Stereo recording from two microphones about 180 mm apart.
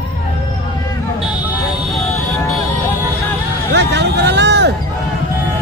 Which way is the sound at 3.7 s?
70° right (ahead or behind).